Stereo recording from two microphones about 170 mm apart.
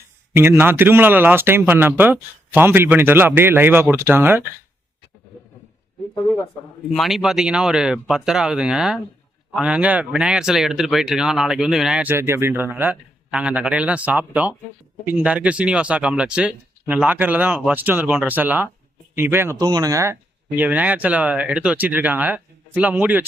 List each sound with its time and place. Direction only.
0.3 s speech: 15° right (ahead or behind)
6.9 s speech: centre (ahead or behind)